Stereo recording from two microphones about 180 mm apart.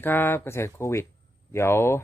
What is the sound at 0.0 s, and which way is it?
Speech, 10° left (ahead or behind).